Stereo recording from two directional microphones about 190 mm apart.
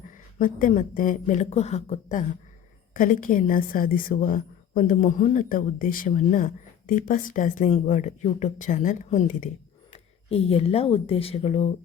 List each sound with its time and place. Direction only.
0.1 s a woman's voice: 45° left (ahead or behind)